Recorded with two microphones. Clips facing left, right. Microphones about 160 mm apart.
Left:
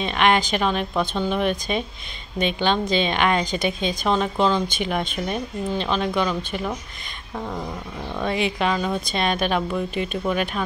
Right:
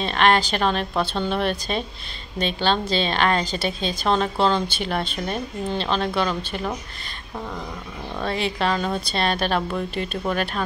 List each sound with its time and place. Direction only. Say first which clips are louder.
0.0 s speech: even; 10° left (ahead or behind)
8.3 s speech: left 1 dB; 10° left (ahead or behind)